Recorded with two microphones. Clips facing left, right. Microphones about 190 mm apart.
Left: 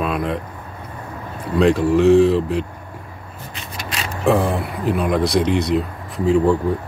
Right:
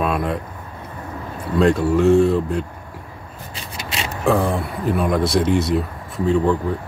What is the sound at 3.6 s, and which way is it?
Vehicle, 25° right (ahead or behind).